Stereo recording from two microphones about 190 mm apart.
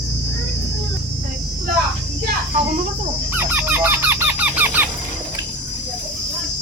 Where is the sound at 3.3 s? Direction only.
10° right (ahead or behind).